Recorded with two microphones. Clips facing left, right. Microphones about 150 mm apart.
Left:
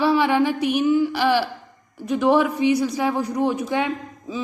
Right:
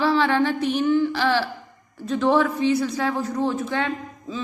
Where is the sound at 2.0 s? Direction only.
10° left (ahead or behind).